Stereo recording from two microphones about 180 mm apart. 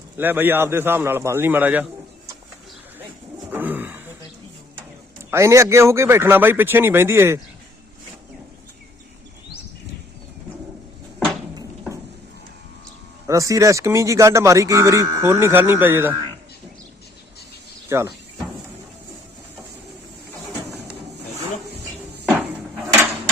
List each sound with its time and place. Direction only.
0.2 s speech: 10° right (ahead or behind)
3.5 s bird: 10° right (ahead or behind)
5.3 s speech: 15° right (ahead or behind)
13.2 s speech: 15° right (ahead or behind)
17.8 s speech: 15° right (ahead or behind)